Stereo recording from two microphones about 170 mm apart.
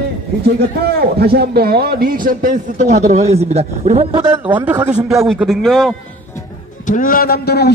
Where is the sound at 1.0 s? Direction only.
70° right (ahead or behind); by 4.2 s 35° right (ahead or behind).